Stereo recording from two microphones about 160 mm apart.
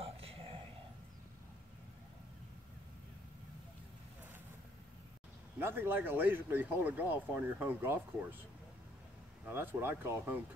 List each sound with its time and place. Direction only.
0.0 s a sound: 35° right (ahead or behind)
5.6 s speech: 15° right (ahead or behind)
9.5 s speech: 15° right (ahead or behind)